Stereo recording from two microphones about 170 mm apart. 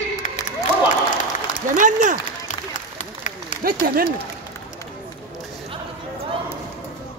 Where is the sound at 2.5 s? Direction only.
45° left (ahead or behind).